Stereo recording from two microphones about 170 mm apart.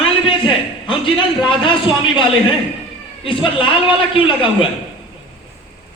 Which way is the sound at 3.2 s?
30° left (ahead or behind).